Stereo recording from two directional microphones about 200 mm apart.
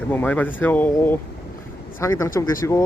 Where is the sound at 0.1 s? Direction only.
10° left (ahead or behind).